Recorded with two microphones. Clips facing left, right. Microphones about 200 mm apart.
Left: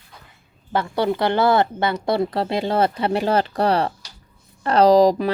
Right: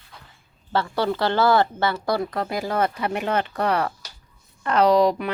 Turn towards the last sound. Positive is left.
turn(degrees=35)  # may be behind; listen again after turning